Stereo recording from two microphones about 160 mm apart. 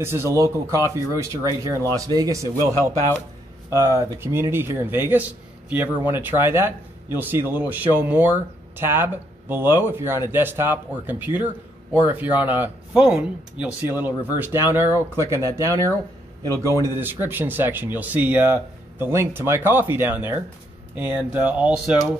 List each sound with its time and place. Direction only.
0.0 s speech: 15° right (ahead or behind)
3.7 s speech: 15° right (ahead or behind)